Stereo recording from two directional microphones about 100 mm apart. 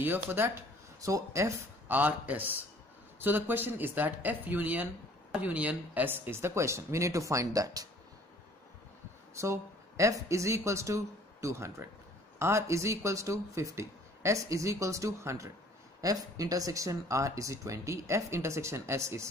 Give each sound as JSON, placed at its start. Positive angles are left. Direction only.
{"t": 0.0, "sound": "speech", "side_deg": -20}
{"t": 1.9, "sound": "a man's voice", "side_deg": -15}
{"t": 9.3, "sound": "speech", "side_deg": -30}